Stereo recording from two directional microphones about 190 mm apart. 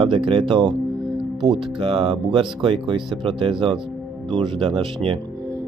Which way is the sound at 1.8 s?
30° right (ahead or behind).